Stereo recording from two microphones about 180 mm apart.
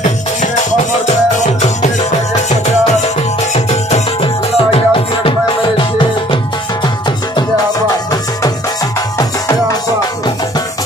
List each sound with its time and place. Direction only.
3.5 s music: 35° left (ahead or behind)